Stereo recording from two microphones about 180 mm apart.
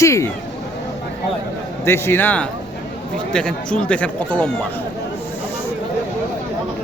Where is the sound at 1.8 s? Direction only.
15° left (ahead or behind).